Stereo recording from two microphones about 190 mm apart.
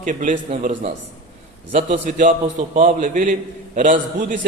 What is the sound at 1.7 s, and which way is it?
A man's voice, 40° right (ahead or behind).